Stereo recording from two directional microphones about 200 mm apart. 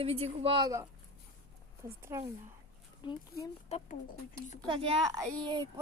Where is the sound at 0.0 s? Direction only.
30° right (ahead or behind).